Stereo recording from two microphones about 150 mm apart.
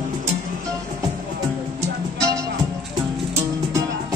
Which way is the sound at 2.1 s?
20° right (ahead or behind).